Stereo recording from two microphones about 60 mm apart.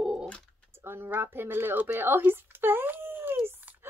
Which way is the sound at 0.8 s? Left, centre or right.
Right.